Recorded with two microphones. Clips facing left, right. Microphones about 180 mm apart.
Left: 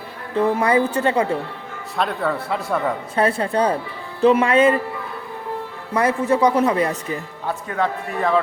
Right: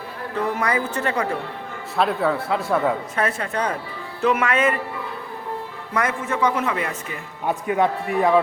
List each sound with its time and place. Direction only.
0.3 s a woman's voice: 30° left (ahead or behind)
2.0 s a man's voice: centre (ahead or behind)
3.2 s a man's voice: 30° left (ahead or behind)
5.9 s a man's voice: 35° left (ahead or behind)
7.4 s a man's voice: 15° right (ahead or behind)